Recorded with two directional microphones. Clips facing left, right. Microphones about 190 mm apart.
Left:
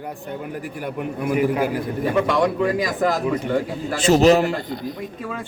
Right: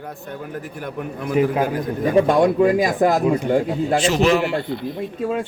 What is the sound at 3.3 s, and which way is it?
Speech, 25° right (ahead or behind).